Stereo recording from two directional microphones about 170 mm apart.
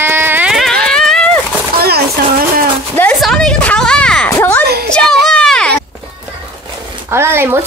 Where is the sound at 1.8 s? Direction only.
65° right (ahead or behind).